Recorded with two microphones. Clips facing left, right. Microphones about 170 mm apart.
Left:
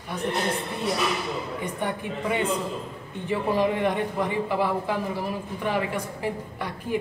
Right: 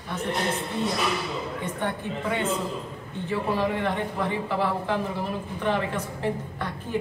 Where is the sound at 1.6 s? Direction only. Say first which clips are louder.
Even; 10° left (ahead or behind).